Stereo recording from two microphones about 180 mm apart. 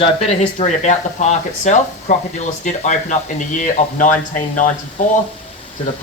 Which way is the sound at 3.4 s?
45° left (ahead or behind).